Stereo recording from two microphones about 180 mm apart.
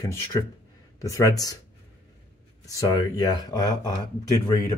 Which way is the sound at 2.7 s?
20° left (ahead or behind).